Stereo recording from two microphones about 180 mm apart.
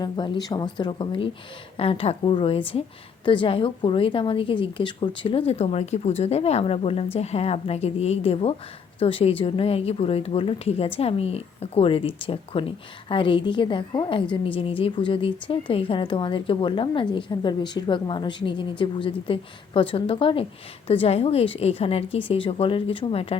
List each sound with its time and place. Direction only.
0.0 s a woman's voice: 25° left (ahead or behind)